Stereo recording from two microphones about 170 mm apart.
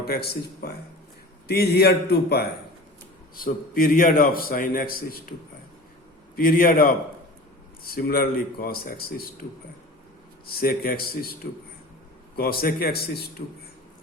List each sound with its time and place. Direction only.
0.0 s a man's voice: 65° left (ahead or behind)
3.3 s a man's voice: 55° left (ahead or behind)
6.3 s a man's voice: 60° left (ahead or behind)
10.4 s a man's voice: 60° left (ahead or behind)
12.4 s a man's voice: 60° left (ahead or behind)
13.4 s speech: 40° left (ahead or behind)